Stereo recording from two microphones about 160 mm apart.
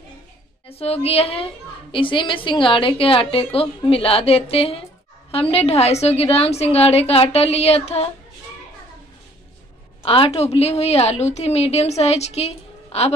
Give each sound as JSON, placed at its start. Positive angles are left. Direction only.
{"t": 0.7, "sound": "a woman's voice", "side_deg": 40}
{"t": 10.0, "sound": "a woman's voice", "side_deg": 35}